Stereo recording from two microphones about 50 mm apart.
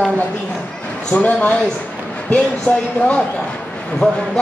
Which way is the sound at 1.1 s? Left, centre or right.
Left.